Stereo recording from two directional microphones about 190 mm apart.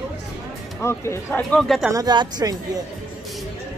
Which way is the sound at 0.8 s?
15° left (ahead or behind).